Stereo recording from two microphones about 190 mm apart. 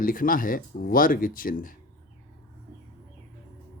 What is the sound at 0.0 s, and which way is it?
Speech, 45° left (ahead or behind).